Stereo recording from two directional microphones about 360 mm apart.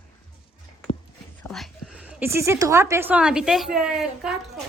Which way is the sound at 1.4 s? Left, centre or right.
Centre.